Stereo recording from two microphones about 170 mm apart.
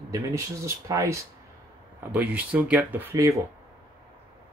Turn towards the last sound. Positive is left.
turn(degrees=-15)  # may be behind; listen again after turning